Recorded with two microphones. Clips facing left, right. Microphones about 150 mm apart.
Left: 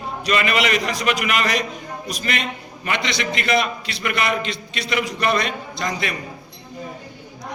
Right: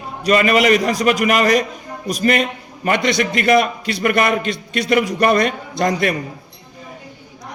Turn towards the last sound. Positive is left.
turn(degrees=-50)  # may be behind; listen again after turning